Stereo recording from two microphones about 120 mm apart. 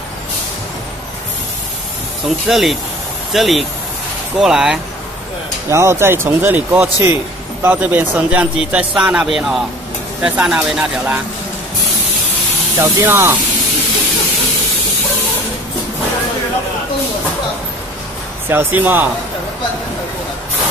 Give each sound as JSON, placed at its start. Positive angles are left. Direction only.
{"t": 2.2, "sound": "speech", "side_deg": 0}
{"t": 5.7, "sound": "a man's voice", "side_deg": -25}
{"t": 12.7, "sound": "a man's voice", "side_deg": -20}
{"t": 18.5, "sound": "speech", "side_deg": -15}